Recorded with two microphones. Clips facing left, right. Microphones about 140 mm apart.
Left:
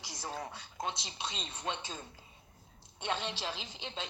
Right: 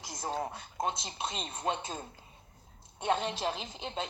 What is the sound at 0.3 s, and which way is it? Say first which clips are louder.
Radio: right 6 dB; 25° right (ahead or behind).